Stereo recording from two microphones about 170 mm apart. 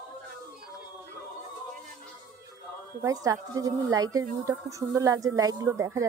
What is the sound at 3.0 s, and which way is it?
Speech, 20° right (ahead or behind).